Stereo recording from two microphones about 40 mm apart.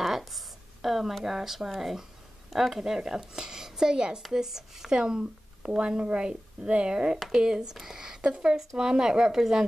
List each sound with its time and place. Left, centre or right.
0.0 s a sound: centre
0.8 s a woman's voice: centre; by 7.2 s right
7.2 s a woman's voice: centre
8.2 s a woman's voice: right